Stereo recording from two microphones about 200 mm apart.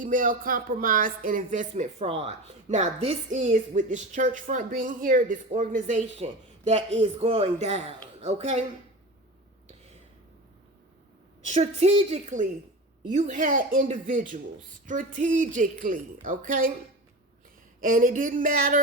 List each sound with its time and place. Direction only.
0.0 s speech: 40° right (ahead or behind)
11.4 s a woman's voice: 35° right (ahead or behind)
17.8 s speech: 40° right (ahead or behind)